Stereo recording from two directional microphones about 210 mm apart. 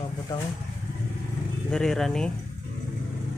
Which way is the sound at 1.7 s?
Centre (ahead or behind).